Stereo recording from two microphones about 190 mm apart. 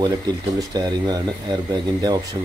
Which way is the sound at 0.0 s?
20° right (ahead or behind).